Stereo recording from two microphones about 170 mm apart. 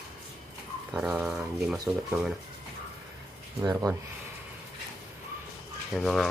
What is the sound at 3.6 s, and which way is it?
Speech, 20° right (ahead or behind).